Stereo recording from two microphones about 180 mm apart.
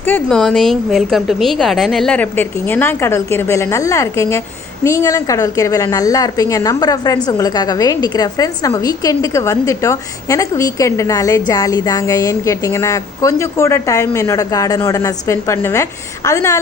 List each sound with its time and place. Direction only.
0.0 s a woman's voice: 5° left (ahead or behind)